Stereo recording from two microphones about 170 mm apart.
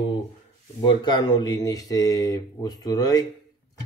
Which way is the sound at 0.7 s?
25° left (ahead or behind).